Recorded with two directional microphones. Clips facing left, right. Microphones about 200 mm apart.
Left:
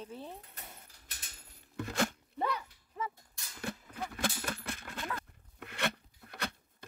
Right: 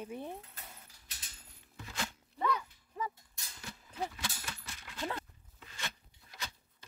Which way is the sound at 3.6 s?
55° left (ahead or behind).